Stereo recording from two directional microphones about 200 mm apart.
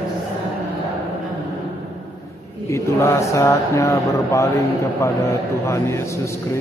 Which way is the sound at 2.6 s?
15° left (ahead or behind).